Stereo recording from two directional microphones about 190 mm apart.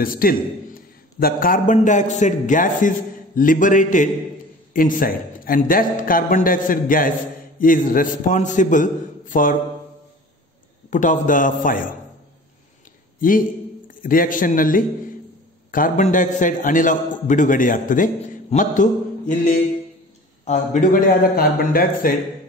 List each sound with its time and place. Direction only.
0.0 s a man's voice: 50° left (ahead or behind)
10.9 s a man's voice: 40° left (ahead or behind)
13.8 s a man's voice: 45° left (ahead or behind)